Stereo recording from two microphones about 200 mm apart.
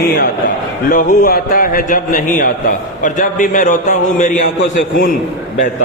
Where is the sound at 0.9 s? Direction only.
45° left (ahead or behind).